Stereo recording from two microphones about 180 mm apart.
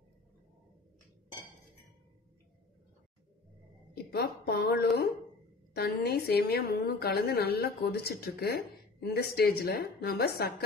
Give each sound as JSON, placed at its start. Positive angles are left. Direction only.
{"t": 3.9, "sound": "a woman's voice", "side_deg": 60}